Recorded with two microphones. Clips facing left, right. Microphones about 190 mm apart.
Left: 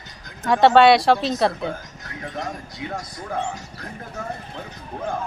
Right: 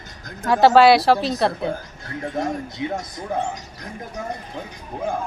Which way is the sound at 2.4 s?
25° right (ahead or behind).